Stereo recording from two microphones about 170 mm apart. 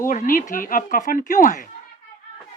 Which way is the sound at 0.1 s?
50° left (ahead or behind).